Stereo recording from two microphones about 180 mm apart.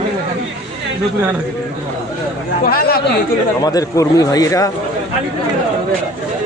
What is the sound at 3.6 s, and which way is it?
Speech, 20° left (ahead or behind).